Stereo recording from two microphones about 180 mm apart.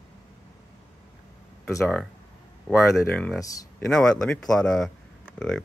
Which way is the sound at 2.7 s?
10° left (ahead or behind).